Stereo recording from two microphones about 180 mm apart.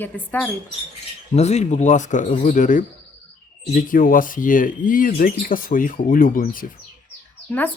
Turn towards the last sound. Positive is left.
turn(degrees=10)  # may be behind; listen again after turning